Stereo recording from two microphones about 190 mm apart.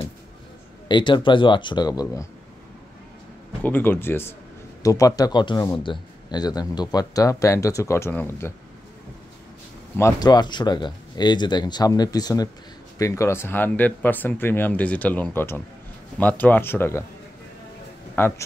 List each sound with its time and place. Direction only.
0.8 s a man's voice: 25° left (ahead or behind)
3.6 s a man's voice: 10° left (ahead or behind)
9.9 s a man's voice: 15° left (ahead or behind)
18.2 s speech: 10° left (ahead or behind)